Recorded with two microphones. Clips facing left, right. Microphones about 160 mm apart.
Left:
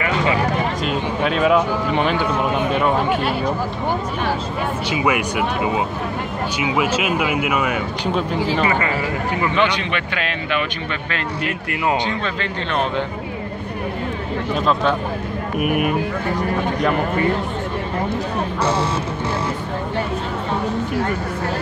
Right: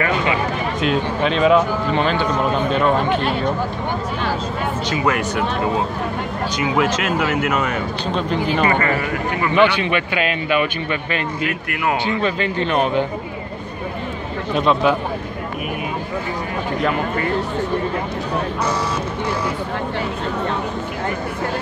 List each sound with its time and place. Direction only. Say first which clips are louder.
0.8 s speech: right 2 dB; 5° left (ahead or behind)
4.9 s speech: even; 10° left (ahead or behind)
9.6 s speech: right 4 dB; 10° right (ahead or behind)
12.2 s speech: right 5 dB; 10° right (ahead or behind)
14.7 s speech: right 2 dB; 5° right (ahead or behind)
15.6 s speech: left 9 dB; 65° left (ahead or behind)